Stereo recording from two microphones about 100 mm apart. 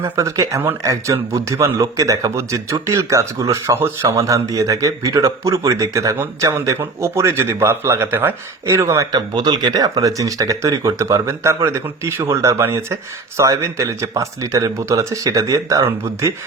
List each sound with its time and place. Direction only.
0.0 s a man's voice: 30° right (ahead or behind)
9.3 s speech: 45° right (ahead or behind)